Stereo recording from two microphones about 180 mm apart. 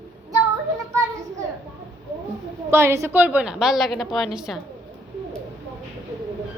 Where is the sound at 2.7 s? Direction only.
15° right (ahead or behind).